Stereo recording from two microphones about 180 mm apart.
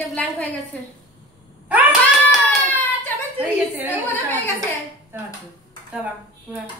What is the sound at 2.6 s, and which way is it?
Hands, 10° left (ahead or behind).